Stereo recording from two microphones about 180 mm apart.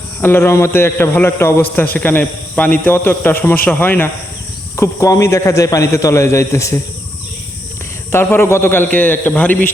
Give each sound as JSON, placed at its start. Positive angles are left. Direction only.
{"t": 0.2, "sound": "a man's voice", "side_deg": 10}
{"t": 8.1, "sound": "a man's voice", "side_deg": 10}